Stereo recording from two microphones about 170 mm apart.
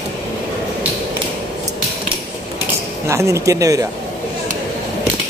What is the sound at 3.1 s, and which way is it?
Speech, 15° right (ahead or behind).